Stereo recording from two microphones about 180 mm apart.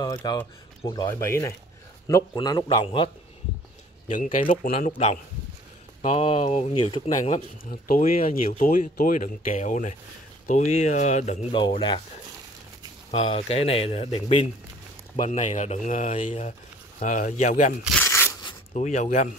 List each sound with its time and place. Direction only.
0.0 s a man's voice: 25° left (ahead or behind)
4.1 s speech: 45° left (ahead or behind)
7.9 s speech: 45° left (ahead or behind)
11.5 s a man's voice: 30° left (ahead or behind)
13.1 s speech: 35° left (ahead or behind)
18.0 s a sound: 15° left (ahead or behind)
18.7 s speech: 40° left (ahead or behind)